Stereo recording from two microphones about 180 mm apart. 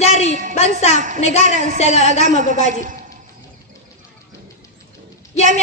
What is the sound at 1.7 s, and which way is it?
Speech, 35° left (ahead or behind).